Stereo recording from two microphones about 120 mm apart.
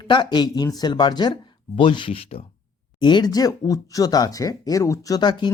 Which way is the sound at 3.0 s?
35° left (ahead or behind).